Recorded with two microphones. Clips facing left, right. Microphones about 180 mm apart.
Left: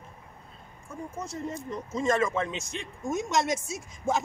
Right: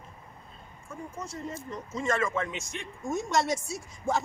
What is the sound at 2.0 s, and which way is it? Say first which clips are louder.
A woman's voice: left 3 dB; 20° left (ahead or behind).